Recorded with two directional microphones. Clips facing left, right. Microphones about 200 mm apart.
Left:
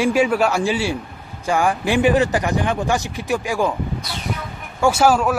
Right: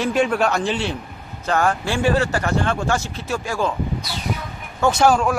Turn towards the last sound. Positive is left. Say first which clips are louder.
# left 1 dB
turn(degrees=5)  # may be behind; listen again after turning